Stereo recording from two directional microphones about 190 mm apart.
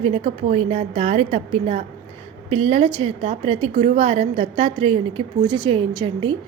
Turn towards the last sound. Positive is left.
turn(degrees=-30)  # may be behind; listen again after turning